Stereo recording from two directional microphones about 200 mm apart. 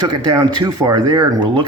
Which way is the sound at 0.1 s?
20° right (ahead or behind).